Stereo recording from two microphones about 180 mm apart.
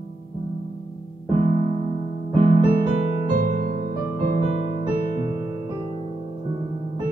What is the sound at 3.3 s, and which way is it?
Music, 45° right (ahead or behind).